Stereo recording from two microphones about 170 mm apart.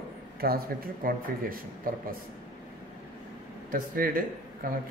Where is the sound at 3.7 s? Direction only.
55° right (ahead or behind).